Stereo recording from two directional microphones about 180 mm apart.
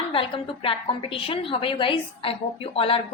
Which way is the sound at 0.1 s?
30° left (ahead or behind).